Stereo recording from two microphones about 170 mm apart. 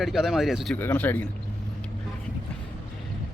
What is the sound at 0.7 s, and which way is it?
Speech, 10° left (ahead or behind).